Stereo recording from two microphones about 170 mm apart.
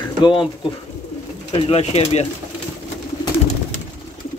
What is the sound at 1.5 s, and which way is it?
Speech, 35° left (ahead or behind).